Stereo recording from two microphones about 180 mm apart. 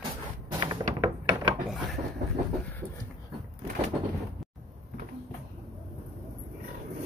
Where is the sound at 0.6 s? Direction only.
25° right (ahead or behind).